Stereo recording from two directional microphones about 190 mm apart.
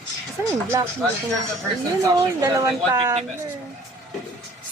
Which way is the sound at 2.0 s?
20° right (ahead or behind).